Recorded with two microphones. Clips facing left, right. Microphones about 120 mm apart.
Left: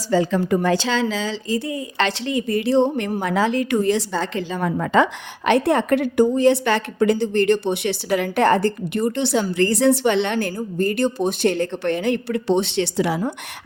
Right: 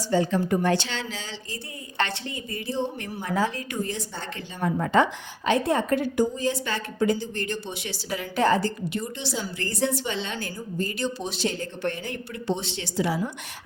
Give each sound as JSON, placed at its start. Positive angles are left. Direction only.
{"t": 0.1, "sound": "speech", "side_deg": 90}
{"t": 3.2, "sound": "speech", "side_deg": 90}
{"t": 5.5, "sound": "a woman's voice", "side_deg": 70}